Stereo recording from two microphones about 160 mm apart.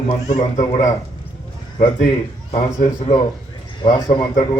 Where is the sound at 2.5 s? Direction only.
45° left (ahead or behind).